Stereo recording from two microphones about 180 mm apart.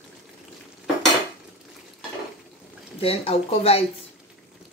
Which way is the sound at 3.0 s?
30° left (ahead or behind).